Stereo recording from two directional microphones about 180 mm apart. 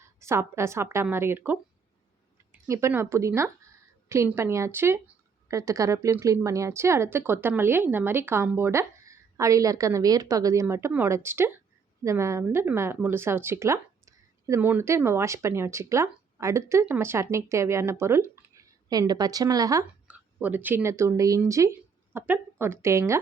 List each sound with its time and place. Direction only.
0.0 s a woman's voice: 15° right (ahead or behind)
20.1 s speech: 10° right (ahead or behind)